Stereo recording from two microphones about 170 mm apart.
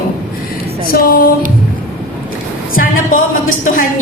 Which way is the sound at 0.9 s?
60° left (ahead or behind).